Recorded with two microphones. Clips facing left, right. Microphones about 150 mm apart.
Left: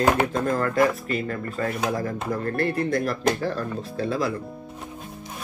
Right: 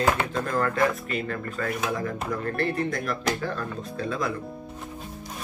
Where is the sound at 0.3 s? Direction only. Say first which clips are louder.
Left 2 dB; 35° left (ahead or behind).